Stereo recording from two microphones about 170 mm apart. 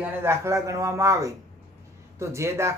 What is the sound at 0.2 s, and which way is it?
Speech, 15° right (ahead or behind).